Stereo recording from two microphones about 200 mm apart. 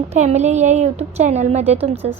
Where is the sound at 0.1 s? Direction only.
35° right (ahead or behind).